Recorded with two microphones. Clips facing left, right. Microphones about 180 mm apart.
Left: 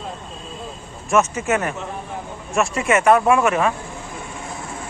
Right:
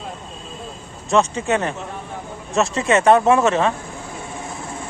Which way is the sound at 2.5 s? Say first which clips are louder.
Right 1 dB; 20° right (ahead or behind).